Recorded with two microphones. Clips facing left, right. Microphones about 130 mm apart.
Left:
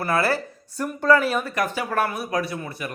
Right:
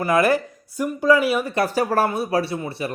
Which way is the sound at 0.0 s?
15° right (ahead or behind).